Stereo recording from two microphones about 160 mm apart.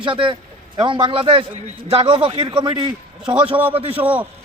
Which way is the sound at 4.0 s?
10° right (ahead or behind).